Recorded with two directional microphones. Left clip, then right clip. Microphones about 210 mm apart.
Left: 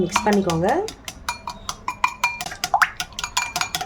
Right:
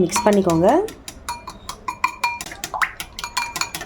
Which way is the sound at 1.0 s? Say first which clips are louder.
Left 1 dB; 15° left (ahead or behind).